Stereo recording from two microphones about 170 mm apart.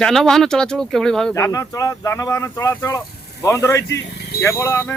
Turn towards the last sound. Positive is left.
turn(degrees=15)  # may be behind; listen again after turning